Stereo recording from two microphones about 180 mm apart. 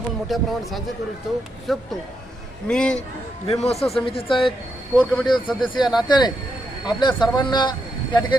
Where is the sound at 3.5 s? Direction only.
35° left (ahead or behind).